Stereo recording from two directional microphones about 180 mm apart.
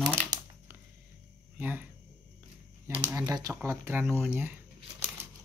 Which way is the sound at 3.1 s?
15° right (ahead or behind).